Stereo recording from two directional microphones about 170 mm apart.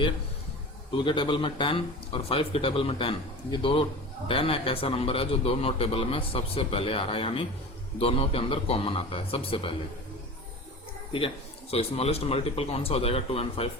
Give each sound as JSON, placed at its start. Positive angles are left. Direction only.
{"t": 0.9, "sound": "a man's voice", "side_deg": 30}
{"t": 11.7, "sound": "a man's voice", "side_deg": 35}